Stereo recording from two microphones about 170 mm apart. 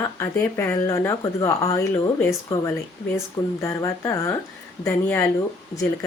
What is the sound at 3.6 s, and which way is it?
Speech, 20° left (ahead or behind).